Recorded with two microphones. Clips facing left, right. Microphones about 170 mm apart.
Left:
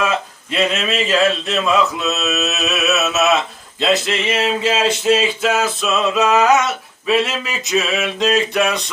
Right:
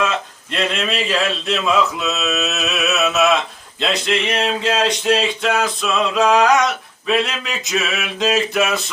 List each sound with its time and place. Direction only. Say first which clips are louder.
0.0 s speech: left 1 dB; 5° left (ahead or behind)